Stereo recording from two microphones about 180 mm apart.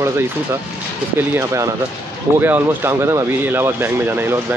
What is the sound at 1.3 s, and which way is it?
Speech, 15° right (ahead or behind).